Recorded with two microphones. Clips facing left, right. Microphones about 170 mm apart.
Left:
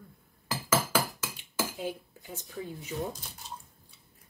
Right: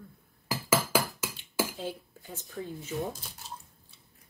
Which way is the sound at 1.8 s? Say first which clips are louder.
Left 1 dB; 15° left (ahead or behind).